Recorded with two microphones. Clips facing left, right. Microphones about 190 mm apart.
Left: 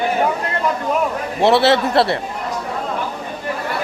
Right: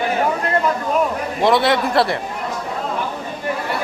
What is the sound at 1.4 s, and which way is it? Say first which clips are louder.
Speech: left 2 dB; 30° left (ahead or behind).